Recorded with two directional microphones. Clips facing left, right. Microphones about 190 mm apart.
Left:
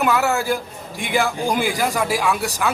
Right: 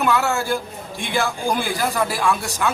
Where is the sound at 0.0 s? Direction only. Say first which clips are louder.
Left 1 dB; 10° left (ahead or behind).